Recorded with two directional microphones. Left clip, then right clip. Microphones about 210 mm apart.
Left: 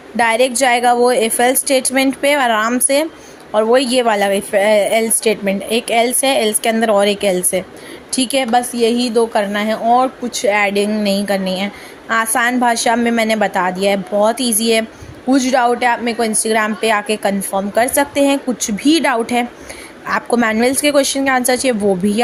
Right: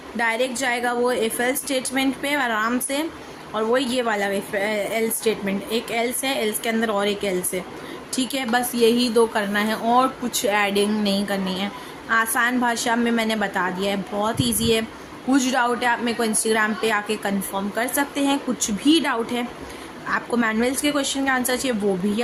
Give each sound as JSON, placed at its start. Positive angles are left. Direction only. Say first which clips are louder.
{"t": 0.2, "sound": "a woman's voice", "louder": "left 9 dB", "side_deg": 30}